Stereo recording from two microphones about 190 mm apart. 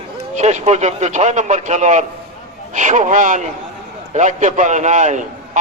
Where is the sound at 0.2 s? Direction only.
35° right (ahead or behind).